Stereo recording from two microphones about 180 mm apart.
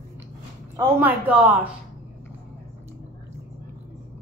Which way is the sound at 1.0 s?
10° right (ahead or behind).